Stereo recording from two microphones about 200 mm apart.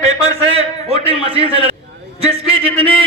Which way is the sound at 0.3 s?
30° right (ahead or behind).